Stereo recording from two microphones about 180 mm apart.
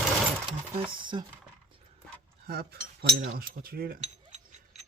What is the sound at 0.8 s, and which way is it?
Speech, 25° right (ahead or behind).